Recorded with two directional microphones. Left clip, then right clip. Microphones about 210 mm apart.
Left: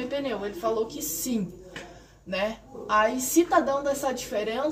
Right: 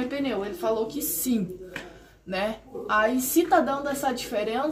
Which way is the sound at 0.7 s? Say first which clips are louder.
Even; 10° right (ahead or behind).